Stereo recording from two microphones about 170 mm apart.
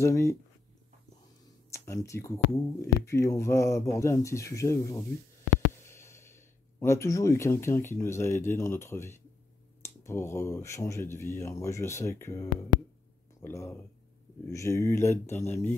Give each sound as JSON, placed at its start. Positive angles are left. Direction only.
{"t": 0.0, "sound": "speech", "side_deg": 15}
{"t": 1.7, "sound": "speech", "side_deg": 15}